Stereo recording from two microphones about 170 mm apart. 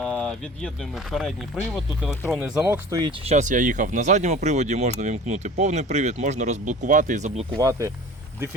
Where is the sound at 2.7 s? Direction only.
15° right (ahead or behind).